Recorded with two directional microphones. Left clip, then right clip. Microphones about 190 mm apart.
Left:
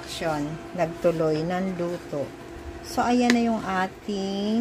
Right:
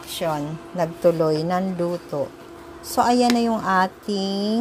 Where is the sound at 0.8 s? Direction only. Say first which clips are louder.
Right 4 dB; 20° right (ahead or behind).